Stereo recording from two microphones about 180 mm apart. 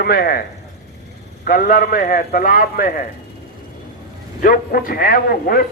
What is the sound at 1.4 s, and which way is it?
A man's voice, 50° left (ahead or behind).